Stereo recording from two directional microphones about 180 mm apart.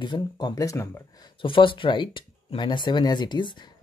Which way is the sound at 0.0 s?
25° left (ahead or behind).